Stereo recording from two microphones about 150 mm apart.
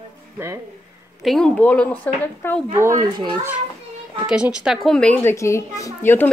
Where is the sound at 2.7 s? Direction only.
15° right (ahead or behind).